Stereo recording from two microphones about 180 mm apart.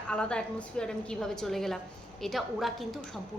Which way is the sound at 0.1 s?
5° left (ahead or behind).